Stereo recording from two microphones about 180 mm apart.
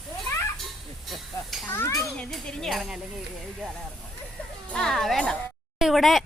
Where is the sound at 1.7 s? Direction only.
15° left (ahead or behind).